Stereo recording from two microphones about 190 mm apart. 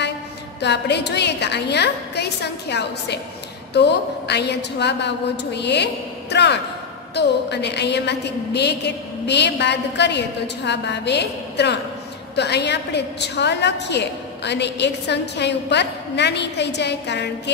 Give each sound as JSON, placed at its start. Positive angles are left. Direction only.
{"t": 0.6, "sound": "a woman's voice", "side_deg": 65}